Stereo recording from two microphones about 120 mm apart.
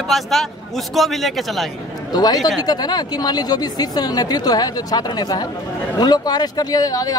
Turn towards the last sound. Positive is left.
turn(degrees=30)  # may be behind; listen again after turning